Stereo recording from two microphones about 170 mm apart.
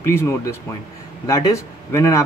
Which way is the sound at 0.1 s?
15° left (ahead or behind).